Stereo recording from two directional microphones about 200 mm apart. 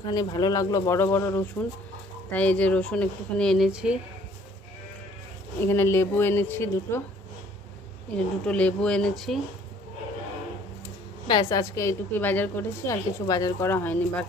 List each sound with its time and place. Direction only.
0.0 s a woman's voice: 20° left (ahead or behind); by 4.0 s 5° right (ahead or behind)
5.6 s a woman's voice: 10° left (ahead or behind)
8.5 s speech: 5° left (ahead or behind)
11.2 s a woman's voice: 20° left (ahead or behind)